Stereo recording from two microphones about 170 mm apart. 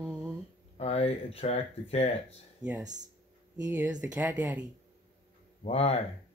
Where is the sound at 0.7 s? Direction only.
40° left (ahead or behind).